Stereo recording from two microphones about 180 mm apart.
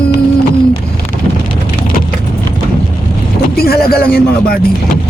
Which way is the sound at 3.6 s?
60° left (ahead or behind).